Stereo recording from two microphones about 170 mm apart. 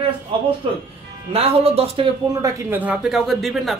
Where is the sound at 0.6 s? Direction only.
35° right (ahead or behind).